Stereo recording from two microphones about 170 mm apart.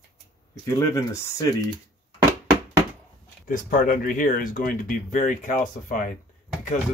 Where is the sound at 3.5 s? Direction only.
55° left (ahead or behind).